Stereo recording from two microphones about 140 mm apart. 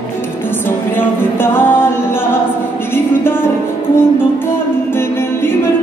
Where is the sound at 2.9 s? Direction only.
15° left (ahead or behind).